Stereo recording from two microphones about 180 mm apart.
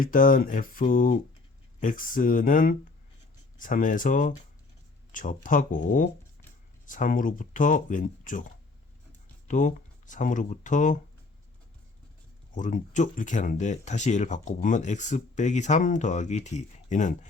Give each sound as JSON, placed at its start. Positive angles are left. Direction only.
{"t": 0.0, "sound": "speech", "side_deg": 50}
{"t": 9.5, "sound": "speech", "side_deg": 45}
{"t": 12.5, "sound": "speech", "side_deg": 45}